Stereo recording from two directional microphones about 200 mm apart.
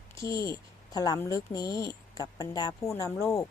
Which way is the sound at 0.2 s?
20° left (ahead or behind).